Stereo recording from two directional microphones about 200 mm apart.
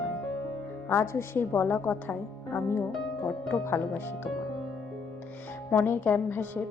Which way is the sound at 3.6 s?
10° left (ahead or behind).